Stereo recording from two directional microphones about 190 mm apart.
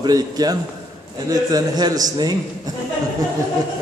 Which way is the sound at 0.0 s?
20° right (ahead or behind).